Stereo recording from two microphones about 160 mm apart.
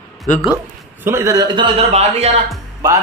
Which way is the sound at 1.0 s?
15° right (ahead or behind).